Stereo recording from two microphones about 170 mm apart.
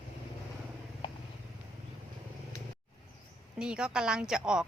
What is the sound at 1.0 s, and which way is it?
Vehicle, 30° left (ahead or behind).